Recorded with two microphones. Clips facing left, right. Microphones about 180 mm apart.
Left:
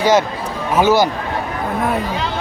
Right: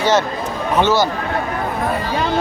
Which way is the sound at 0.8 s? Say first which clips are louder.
Left 2 dB; 10° left (ahead or behind).